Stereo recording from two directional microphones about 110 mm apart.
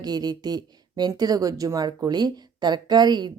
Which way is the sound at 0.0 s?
40° right (ahead or behind).